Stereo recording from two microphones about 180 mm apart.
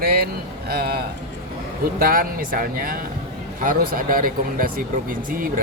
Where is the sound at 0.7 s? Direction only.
60° right (ahead or behind).